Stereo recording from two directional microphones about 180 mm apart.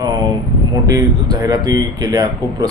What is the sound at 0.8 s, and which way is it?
A man's voice, 20° right (ahead or behind).